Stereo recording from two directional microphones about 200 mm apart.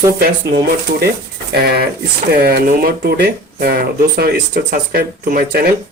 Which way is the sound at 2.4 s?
45° right (ahead or behind).